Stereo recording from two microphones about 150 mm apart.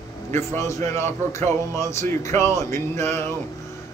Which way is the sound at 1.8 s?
20° left (ahead or behind).